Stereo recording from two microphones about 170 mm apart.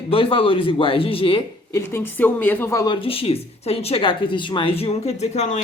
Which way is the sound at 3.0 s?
35° left (ahead or behind).